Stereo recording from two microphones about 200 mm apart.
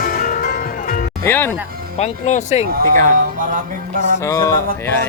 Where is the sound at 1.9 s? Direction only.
35° left (ahead or behind).